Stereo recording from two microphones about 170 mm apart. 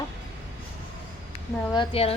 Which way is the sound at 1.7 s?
30° left (ahead or behind).